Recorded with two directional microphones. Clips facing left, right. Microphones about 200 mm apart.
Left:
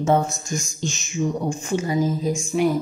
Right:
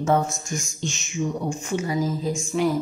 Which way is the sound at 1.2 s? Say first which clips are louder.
Left 3 dB; 45° left (ahead or behind).